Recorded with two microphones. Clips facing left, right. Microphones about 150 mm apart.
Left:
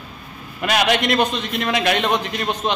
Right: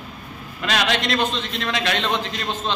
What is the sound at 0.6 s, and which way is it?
A man's voice, 15° left (ahead or behind).